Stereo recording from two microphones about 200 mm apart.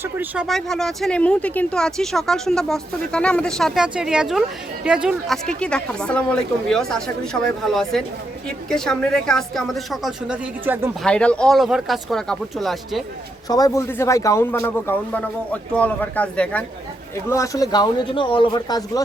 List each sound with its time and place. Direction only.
0.0 s speech: 10° right (ahead or behind)
0.4 s speech: centre (ahead or behind)
11.0 s speech: 5° left (ahead or behind)
13.5 s a man's voice: 15° left (ahead or behind)